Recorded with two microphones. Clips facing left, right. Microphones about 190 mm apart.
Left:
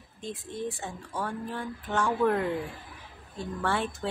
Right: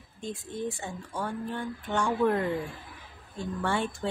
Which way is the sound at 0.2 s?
Centre (ahead or behind).